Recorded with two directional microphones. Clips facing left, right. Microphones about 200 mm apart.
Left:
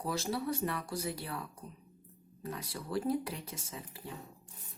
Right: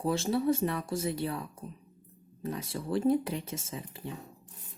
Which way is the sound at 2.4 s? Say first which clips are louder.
Right 6 dB; 25° right (ahead or behind).